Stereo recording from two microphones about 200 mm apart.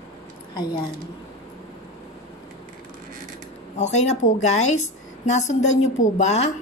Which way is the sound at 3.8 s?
35° left (ahead or behind).